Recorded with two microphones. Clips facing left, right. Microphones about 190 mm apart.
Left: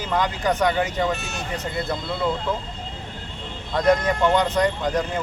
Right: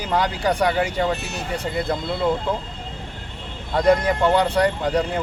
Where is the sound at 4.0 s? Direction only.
30° right (ahead or behind).